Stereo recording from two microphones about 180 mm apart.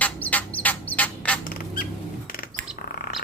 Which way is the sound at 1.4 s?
50° left (ahead or behind).